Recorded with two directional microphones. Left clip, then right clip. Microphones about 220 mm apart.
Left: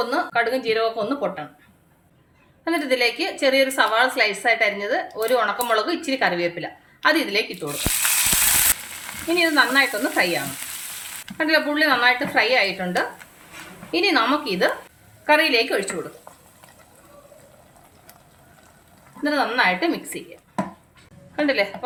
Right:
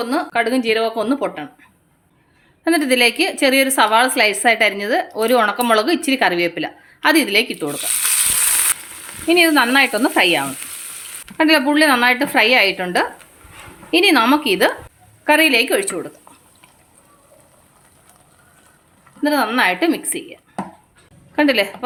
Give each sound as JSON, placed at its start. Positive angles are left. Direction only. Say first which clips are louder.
{"t": 0.0, "sound": "a woman's voice", "louder": "right 2 dB", "side_deg": -40}
{"t": 2.6, "sound": "a woman's voice", "louder": "right 6 dB", "side_deg": -45}
{"t": 9.3, "sound": "a woman's voice", "louder": "right 5 dB", "side_deg": -45}
{"t": 19.2, "sound": "a woman's voice", "louder": "right 4 dB", "side_deg": -45}
{"t": 21.3, "sound": "a woman's voice", "louder": "right 5 dB", "side_deg": -45}